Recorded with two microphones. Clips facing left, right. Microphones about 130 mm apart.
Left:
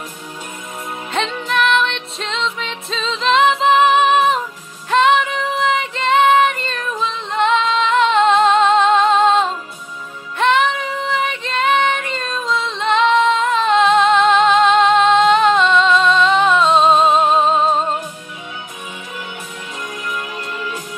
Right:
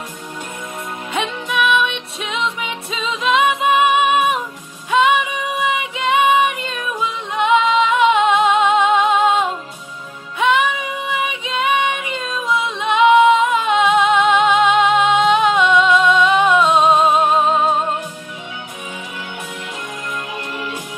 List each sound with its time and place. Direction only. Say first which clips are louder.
1.1 s music: left 1 dB; 5° right (ahead or behind)
4.9 s female singing: left 1 dB; 5° right (ahead or behind)
10.4 s music: left 1 dB; 5° right (ahead or behind)
16.9 s music: left 1 dB; 25° left (ahead or behind)